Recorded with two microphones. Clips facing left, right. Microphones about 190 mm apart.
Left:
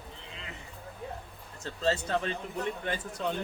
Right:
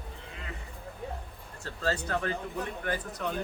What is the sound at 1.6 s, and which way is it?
Speech, 25° left (ahead or behind).